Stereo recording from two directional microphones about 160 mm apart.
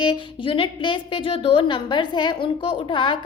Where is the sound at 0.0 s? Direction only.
30° left (ahead or behind).